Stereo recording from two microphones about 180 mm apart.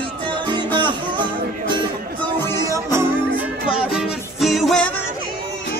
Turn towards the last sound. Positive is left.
turn(degrees=0)  # may be behind; listen again after turning